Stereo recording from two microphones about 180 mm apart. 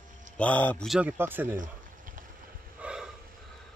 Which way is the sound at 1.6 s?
50° right (ahead or behind).